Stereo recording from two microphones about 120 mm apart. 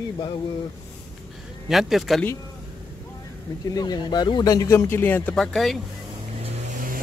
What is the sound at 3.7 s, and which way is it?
Speech, 35° left (ahead or behind).